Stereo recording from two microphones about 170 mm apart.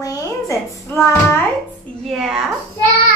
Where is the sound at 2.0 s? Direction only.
Centre (ahead or behind).